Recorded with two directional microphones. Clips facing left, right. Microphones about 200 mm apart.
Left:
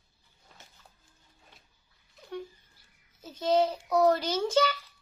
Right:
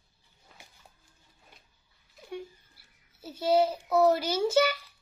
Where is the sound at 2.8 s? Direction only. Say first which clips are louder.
Right 1 dB; 10° right (ahead or behind).